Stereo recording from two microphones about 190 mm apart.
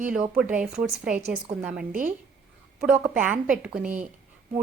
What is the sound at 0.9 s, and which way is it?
Speech, 45° right (ahead or behind).